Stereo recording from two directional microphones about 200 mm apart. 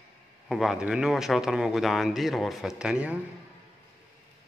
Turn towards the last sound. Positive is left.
turn(degrees=-5)  # may be behind; listen again after turning